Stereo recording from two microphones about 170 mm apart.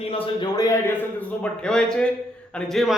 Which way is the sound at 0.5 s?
20° left (ahead or behind).